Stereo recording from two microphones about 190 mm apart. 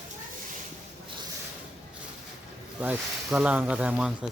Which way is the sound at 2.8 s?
5° right (ahead or behind).